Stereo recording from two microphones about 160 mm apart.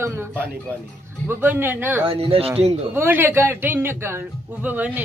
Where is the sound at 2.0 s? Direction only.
35° right (ahead or behind).